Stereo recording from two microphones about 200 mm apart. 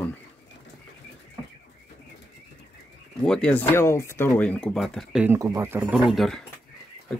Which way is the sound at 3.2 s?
5° left (ahead or behind).